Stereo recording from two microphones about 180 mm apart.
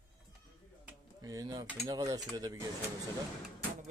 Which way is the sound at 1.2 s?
20° right (ahead or behind).